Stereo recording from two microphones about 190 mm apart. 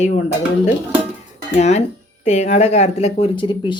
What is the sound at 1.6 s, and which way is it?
Speech, 35° left (ahead or behind).